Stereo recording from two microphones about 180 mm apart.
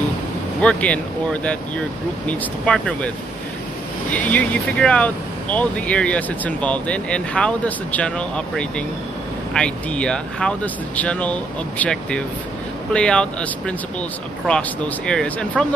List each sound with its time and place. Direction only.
0.6 s speech: 5° left (ahead or behind)
4.1 s speech: 10° left (ahead or behind)